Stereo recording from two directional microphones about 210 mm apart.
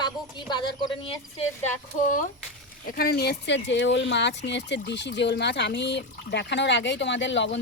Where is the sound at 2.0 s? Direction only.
40° left (ahead or behind); by 7.5 s 60° left (ahead or behind).